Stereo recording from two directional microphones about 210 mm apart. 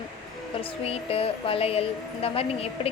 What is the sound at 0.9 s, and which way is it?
A woman's voice, 25° left (ahead or behind).